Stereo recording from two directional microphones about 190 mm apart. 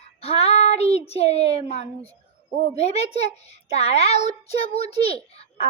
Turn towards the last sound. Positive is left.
turn(degrees=30)  # may be behind; listen again after turning